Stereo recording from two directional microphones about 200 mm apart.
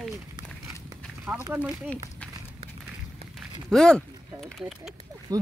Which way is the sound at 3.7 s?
5° left (ahead or behind).